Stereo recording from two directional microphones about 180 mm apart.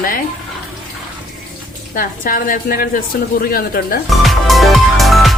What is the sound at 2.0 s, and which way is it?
A woman's voice, 50° left (ahead or behind).